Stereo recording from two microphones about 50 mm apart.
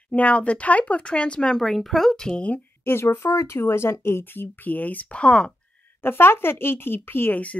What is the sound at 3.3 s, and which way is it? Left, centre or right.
Speech, left.